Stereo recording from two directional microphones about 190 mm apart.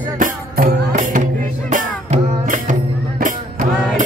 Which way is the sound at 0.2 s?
45° right (ahead or behind).